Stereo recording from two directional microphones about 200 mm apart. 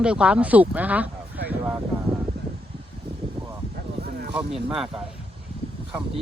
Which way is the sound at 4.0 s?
55° right (ahead or behind).